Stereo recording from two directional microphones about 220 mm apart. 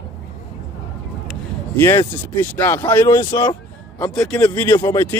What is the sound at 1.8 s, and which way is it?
Speech, 10° left (ahead or behind).